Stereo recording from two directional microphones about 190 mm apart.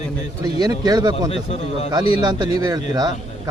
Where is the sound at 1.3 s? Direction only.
35° left (ahead or behind).